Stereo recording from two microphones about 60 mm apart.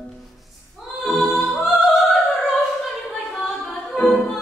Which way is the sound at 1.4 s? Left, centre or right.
Centre.